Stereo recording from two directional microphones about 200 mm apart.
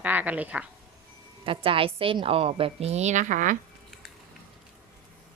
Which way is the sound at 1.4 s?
25° right (ahead or behind).